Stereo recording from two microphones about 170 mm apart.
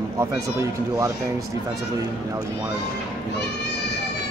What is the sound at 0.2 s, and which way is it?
Speech, 15° right (ahead or behind).